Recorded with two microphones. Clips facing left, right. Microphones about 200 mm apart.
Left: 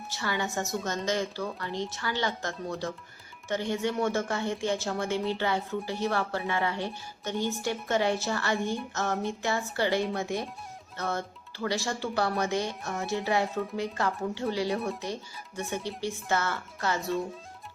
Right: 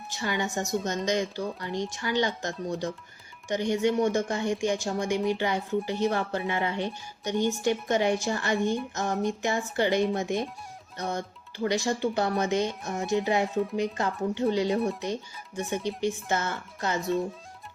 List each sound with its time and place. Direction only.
0.1 s a woman's voice: 15° right (ahead or behind)
13.5 s speech: centre (ahead or behind)
13.7 s speech: 20° right (ahead or behind)
17.0 s speech: centre (ahead or behind)